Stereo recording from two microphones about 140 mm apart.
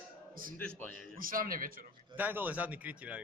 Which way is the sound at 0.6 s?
10° left (ahead or behind).